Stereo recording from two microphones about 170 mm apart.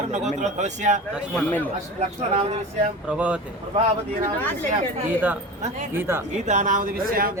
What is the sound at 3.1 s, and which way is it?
Speech, 5° right (ahead or behind).